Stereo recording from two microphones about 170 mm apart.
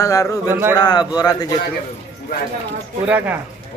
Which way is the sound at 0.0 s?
20° left (ahead or behind).